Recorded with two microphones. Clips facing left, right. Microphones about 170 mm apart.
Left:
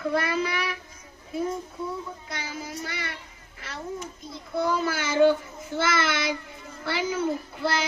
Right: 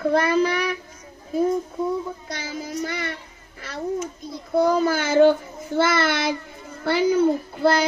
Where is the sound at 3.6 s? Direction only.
35° right (ahead or behind).